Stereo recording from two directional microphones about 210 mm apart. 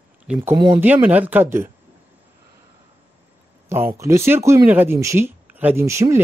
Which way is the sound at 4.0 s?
15° right (ahead or behind).